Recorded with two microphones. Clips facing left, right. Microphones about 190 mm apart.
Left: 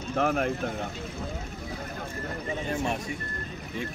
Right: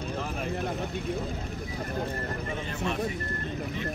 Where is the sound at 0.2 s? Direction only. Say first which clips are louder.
Left 8 dB; 60° left (ahead or behind).